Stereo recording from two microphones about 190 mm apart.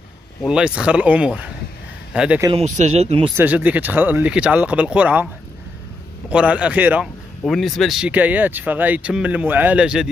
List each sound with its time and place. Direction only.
0.5 s speech: 5° right (ahead or behind)
2.5 s speech: 35° right (ahead or behind)
3.3 s speech: 10° right (ahead or behind)
6.3 s speech: 5° right (ahead or behind)